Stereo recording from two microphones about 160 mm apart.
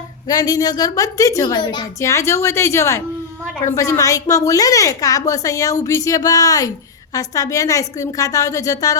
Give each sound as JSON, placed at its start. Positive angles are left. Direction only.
{"t": 0.3, "sound": "a woman's voice", "side_deg": 25}